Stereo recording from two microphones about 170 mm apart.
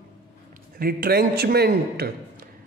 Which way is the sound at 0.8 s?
65° right (ahead or behind).